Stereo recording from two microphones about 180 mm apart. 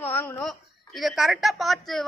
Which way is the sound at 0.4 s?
Centre (ahead or behind).